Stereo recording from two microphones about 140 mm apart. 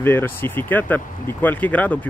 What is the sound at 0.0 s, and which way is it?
Speech, 15° left (ahead or behind).